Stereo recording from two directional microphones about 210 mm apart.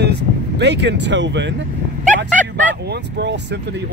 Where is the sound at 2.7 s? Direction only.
55° right (ahead or behind).